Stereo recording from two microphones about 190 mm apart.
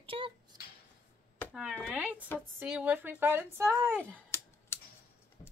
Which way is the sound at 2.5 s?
10° right (ahead or behind).